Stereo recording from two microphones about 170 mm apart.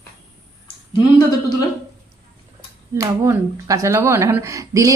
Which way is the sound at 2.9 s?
15° right (ahead or behind).